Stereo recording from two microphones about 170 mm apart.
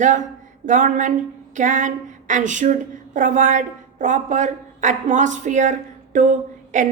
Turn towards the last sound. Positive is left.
turn(degrees=-45)  # may be behind; listen again after turning